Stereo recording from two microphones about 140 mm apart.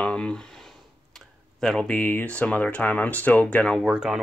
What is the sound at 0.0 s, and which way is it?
Speech, 10° left (ahead or behind).